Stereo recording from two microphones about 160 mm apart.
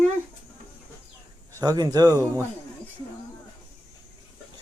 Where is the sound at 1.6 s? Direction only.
25° right (ahead or behind).